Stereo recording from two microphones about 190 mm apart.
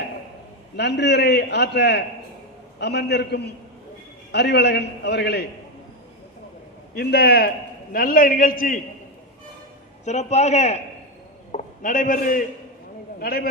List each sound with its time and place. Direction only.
0.8 s a man's voice: 65° left (ahead or behind)
6.9 s a man's voice: 55° left (ahead or behind)
10.1 s a man's voice: 35° left (ahead or behind); by 13.5 s 55° left (ahead or behind)